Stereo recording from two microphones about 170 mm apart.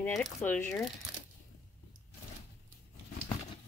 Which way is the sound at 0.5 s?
5° left (ahead or behind).